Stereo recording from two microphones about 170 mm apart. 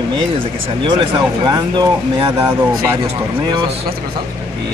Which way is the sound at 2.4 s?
15° right (ahead or behind).